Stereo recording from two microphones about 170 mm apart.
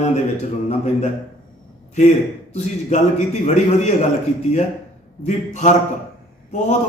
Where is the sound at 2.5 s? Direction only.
40° left (ahead or behind).